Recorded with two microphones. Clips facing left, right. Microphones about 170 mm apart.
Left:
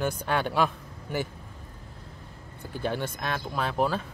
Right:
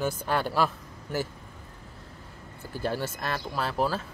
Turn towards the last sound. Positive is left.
turn(degrees=-5)  # may be behind; listen again after turning